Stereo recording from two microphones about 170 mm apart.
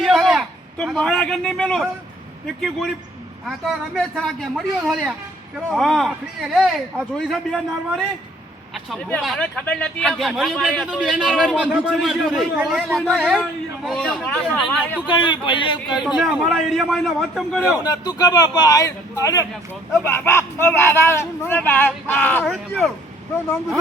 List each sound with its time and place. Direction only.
0.0 s a sound: centre (ahead or behind)
2.6 s speech: centre (ahead or behind)
9.0 s speech: 5° left (ahead or behind)
15.1 s speech: 30° left (ahead or behind)
16.0 s speech: 5° right (ahead or behind)
17.8 s speech: 25° left (ahead or behind); by 22.9 s centre (ahead or behind)